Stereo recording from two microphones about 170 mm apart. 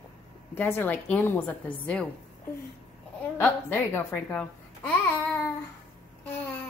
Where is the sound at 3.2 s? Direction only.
10° left (ahead or behind).